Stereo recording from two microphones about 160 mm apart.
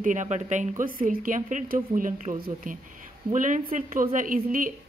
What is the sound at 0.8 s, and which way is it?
Speech, 60° right (ahead or behind).